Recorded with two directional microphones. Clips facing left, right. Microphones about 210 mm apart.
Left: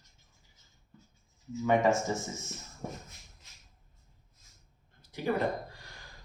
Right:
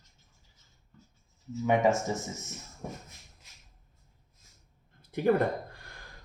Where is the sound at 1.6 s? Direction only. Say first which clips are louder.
Right 1 dB; 15° right (ahead or behind).